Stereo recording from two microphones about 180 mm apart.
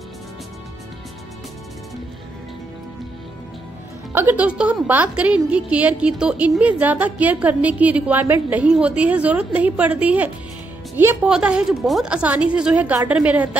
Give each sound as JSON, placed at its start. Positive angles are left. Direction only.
{"t": 4.1, "sound": "a woman's voice", "side_deg": -10}